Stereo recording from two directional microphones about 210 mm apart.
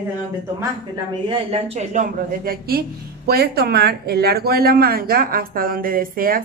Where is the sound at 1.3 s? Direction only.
30° right (ahead or behind).